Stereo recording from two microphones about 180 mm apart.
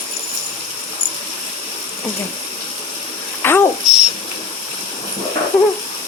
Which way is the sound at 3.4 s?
10° left (ahead or behind).